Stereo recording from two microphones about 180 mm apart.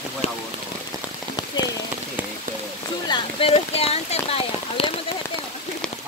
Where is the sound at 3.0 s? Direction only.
30° left (ahead or behind).